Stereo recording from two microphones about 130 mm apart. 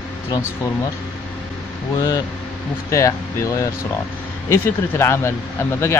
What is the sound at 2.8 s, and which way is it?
Speech, 25° left (ahead or behind).